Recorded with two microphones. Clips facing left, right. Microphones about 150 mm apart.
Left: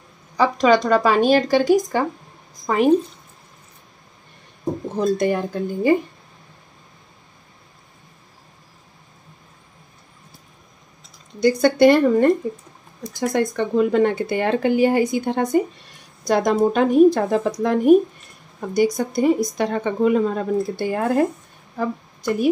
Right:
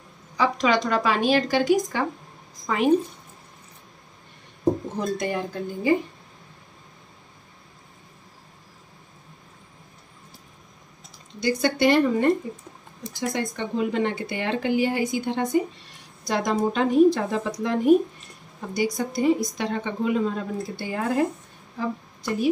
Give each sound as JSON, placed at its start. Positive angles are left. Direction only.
{"t": 0.4, "sound": "a woman's voice", "side_deg": 40}
{"t": 5.2, "sound": "a woman's voice", "side_deg": 50}
{"t": 11.4, "sound": "a woman's voice", "side_deg": 50}